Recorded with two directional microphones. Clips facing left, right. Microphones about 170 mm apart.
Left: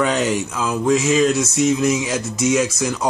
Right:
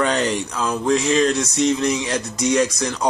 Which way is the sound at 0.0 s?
5° left (ahead or behind).